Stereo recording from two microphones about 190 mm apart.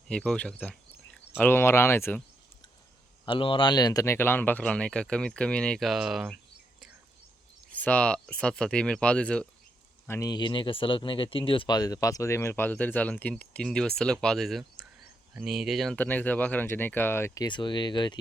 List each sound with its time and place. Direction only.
0.1 s speech: 5° left (ahead or behind)
3.2 s speech: 25° left (ahead or behind); by 6.3 s 5° right (ahead or behind)
7.8 s speech: 5° left (ahead or behind)
10.1 s speech: 20° left (ahead or behind)